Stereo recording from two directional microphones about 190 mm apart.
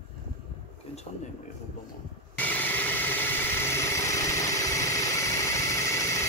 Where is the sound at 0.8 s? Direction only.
30° left (ahead or behind).